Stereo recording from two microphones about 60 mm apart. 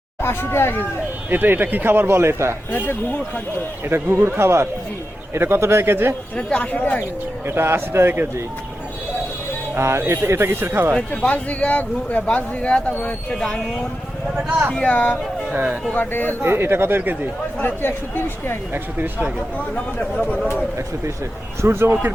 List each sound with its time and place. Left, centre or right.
0.2 s speech: left
1.3 s speech: right
2.7 s speech: left
3.8 s speech: right
6.3 s speech: centre
7.4 s speech: right
9.7 s speech: right
11.1 s speech: left
14.8 s speech: left
16.4 s speech: right
17.8 s speech: left
18.7 s speech: right
19.5 s speech: left
21.6 s speech: right